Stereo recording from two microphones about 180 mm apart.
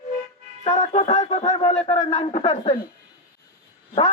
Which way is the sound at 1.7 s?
25° left (ahead or behind).